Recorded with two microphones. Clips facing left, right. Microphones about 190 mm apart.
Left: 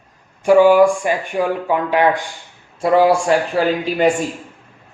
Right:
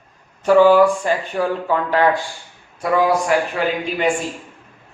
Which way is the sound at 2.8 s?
30° left (ahead or behind).